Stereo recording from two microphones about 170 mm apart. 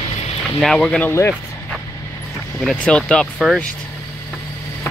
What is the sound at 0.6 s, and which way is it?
Speech, centre (ahead or behind).